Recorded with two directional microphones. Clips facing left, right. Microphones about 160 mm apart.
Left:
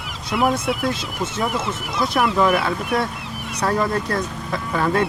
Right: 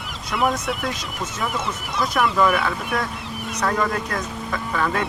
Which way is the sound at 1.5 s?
Centre (ahead or behind).